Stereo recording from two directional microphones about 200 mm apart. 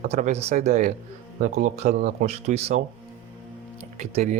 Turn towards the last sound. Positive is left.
turn(degrees=-35)  # may be behind; listen again after turning